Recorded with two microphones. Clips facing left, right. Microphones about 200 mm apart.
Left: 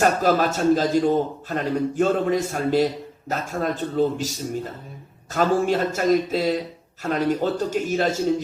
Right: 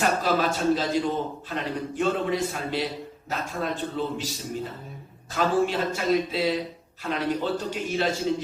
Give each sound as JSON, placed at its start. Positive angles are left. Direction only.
{"t": 0.0, "sound": "a man's voice", "side_deg": 45}
{"t": 5.3, "sound": "a man's voice", "side_deg": 45}